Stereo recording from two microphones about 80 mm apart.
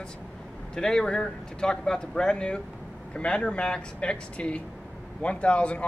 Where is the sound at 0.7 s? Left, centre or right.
Centre.